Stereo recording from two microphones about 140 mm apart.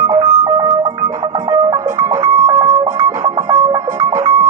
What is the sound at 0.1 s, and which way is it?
Music, 25° right (ahead or behind).